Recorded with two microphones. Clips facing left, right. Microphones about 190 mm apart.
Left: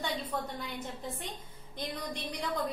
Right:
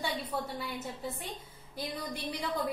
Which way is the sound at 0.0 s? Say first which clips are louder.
Even; 5° right (ahead or behind).